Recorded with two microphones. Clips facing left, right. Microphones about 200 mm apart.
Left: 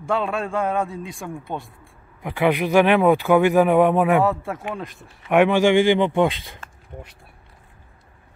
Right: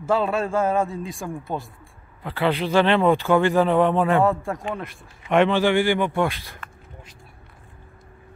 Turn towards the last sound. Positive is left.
turn(degrees=20)  # may be behind; listen again after turning